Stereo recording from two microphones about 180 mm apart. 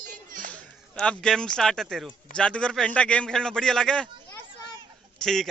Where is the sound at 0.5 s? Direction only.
5° left (ahead or behind).